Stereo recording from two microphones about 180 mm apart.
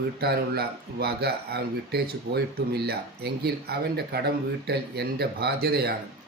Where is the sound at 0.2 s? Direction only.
60° right (ahead or behind).